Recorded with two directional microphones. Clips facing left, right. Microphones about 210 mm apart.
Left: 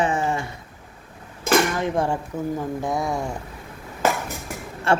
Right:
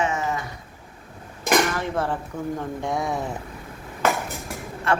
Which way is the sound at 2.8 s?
Centre (ahead or behind).